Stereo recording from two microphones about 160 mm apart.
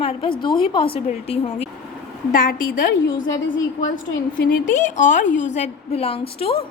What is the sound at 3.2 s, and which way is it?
A woman's voice, 55° left (ahead or behind).